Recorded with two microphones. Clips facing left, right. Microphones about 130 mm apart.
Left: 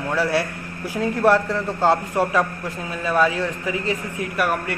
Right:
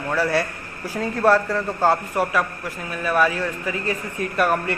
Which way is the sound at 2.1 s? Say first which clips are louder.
Left 2 dB; 25° left (ahead or behind).